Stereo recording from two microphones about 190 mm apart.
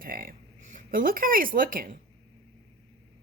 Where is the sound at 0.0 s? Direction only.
50° right (ahead or behind).